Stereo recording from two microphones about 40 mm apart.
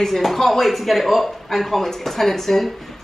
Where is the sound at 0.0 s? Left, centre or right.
Centre.